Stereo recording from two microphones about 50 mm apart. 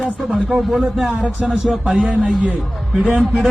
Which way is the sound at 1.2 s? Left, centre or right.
Right.